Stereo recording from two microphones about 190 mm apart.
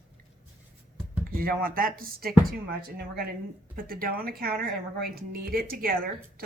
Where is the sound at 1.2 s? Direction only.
50° right (ahead or behind).